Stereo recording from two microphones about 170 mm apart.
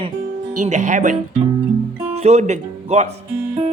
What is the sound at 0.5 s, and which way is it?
Speech, 45° right (ahead or behind).